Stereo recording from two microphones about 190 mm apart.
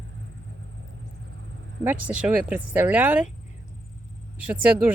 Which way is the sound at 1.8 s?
10° right (ahead or behind).